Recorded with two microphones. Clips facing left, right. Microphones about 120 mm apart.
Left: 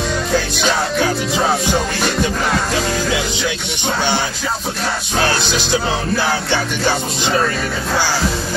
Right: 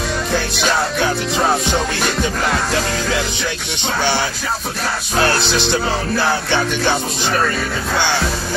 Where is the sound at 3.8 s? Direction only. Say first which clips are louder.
Even; 15° left (ahead or behind).